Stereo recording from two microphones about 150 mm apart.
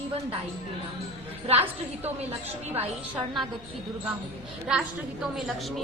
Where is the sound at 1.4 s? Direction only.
40° right (ahead or behind).